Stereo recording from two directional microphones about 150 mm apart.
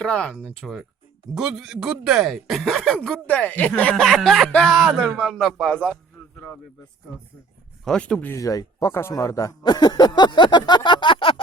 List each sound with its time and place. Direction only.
0.0 s speech: 5° left (ahead or behind)
7.9 s speech: 5° left (ahead or behind)
8.4 s speech: 20° left (ahead or behind)